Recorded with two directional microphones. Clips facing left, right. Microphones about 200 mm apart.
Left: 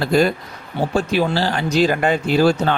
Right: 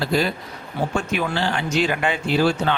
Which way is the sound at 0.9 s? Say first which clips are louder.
Left 7 dB; 35° left (ahead or behind).